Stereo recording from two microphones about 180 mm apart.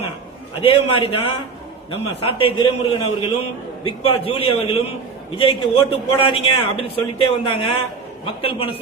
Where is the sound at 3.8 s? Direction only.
30° left (ahead or behind).